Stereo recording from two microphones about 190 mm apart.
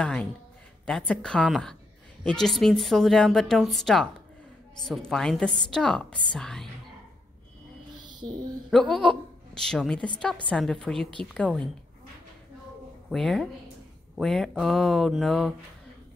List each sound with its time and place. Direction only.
0.0 s a woman's voice: 5° left (ahead or behind)
8.0 s a sound: 25° right (ahead or behind)
8.6 s a woman's voice: centre (ahead or behind)
13.1 s a woman's voice: centre (ahead or behind)